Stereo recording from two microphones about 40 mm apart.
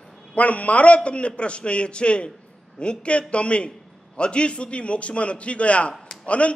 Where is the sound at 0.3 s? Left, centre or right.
Left.